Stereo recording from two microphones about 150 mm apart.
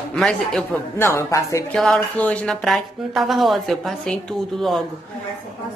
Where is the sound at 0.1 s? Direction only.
5° left (ahead or behind).